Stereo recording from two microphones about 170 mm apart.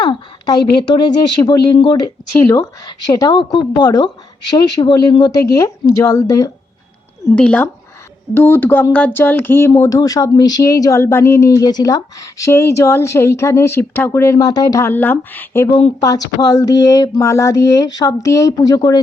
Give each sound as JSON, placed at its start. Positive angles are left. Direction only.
{"t": 0.0, "sound": "a woman's voice", "side_deg": 25}
{"t": 7.3, "sound": "speech", "side_deg": 5}
{"t": 15.7, "sound": "speech", "side_deg": 25}